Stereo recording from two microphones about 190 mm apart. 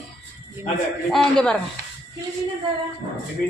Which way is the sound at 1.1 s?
5° left (ahead or behind).